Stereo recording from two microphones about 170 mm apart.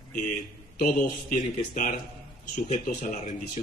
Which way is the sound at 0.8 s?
55° left (ahead or behind).